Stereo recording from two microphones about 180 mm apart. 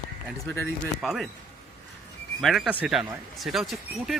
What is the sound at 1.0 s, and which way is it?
Speech, centre (ahead or behind).